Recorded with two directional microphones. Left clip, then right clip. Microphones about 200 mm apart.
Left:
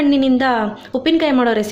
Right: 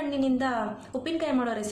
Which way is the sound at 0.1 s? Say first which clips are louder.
Left 12 dB; 35° left (ahead or behind).